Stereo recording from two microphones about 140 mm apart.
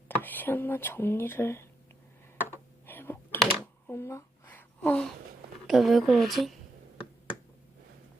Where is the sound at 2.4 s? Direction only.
15° left (ahead or behind).